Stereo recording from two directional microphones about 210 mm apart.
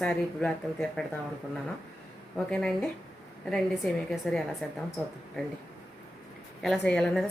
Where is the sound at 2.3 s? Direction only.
5° left (ahead or behind).